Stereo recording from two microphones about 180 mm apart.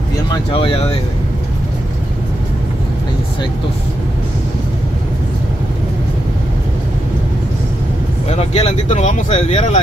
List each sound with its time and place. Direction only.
0.3 s speech: 30° left (ahead or behind)
8.3 s speech: 40° left (ahead or behind)